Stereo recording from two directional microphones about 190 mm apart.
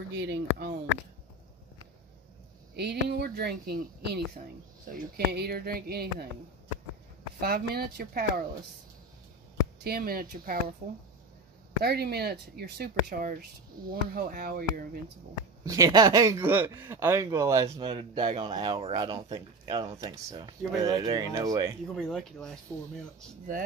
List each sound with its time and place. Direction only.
0.1 s speech: 65° right (ahead or behind)
2.7 s speech: 60° right (ahead or behind)
7.3 s speech: 55° right (ahead or behind)
9.8 s speech: 50° right (ahead or behind)
11.8 s speech: 55° right (ahead or behind)
15.6 s speech: 20° right (ahead or behind)
21.9 s speech: centre (ahead or behind)